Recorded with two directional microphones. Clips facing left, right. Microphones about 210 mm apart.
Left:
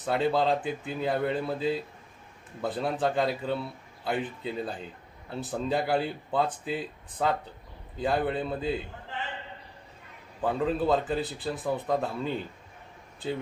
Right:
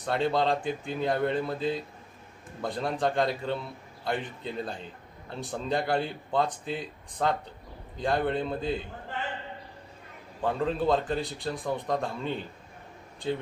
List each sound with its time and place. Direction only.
0.0 s a man's voice: 5° left (ahead or behind)
10.4 s a man's voice: 5° left (ahead or behind)